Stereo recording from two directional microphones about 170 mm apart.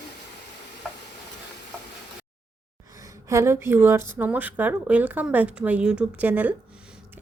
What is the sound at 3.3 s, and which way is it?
A woman's voice, 15° right (ahead or behind).